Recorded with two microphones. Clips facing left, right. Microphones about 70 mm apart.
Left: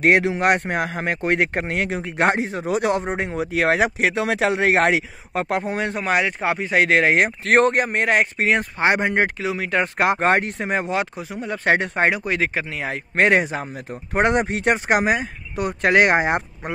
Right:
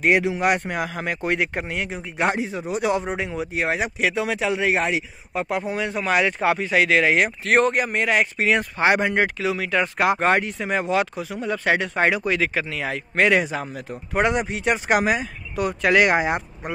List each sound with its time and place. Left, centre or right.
0.0 s speech: left
0.3 s a man's voice: left
3.1 s a man's voice: left
3.3 s speech: left
4.1 s speech: left
5.7 s a man's voice: left
5.9 s a man's voice: left
7.4 s a man's voice: left
11.9 s a man's voice: left